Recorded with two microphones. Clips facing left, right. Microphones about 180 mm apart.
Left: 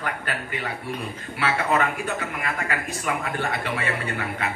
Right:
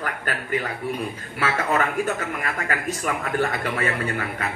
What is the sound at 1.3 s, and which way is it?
Speech, 45° right (ahead or behind).